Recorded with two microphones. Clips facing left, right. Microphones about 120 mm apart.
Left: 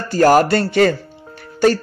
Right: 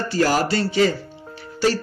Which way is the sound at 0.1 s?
50° left (ahead or behind).